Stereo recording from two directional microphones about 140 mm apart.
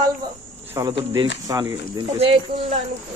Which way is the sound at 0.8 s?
25° right (ahead or behind).